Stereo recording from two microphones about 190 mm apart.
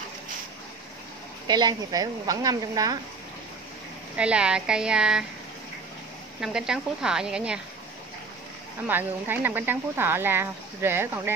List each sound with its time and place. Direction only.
1.5 s speech: 20° right (ahead or behind)
4.2 s a woman's voice: 5° right (ahead or behind)
6.4 s a woman's voice: 5° right (ahead or behind)
8.8 s speech: 10° right (ahead or behind)